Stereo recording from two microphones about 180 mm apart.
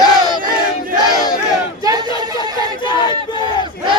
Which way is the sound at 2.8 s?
25° left (ahead or behind).